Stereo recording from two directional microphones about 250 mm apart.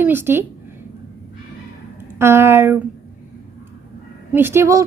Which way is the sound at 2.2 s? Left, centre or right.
Centre.